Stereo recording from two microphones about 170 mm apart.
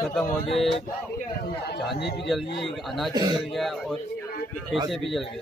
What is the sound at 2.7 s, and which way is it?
Speech, centre (ahead or behind).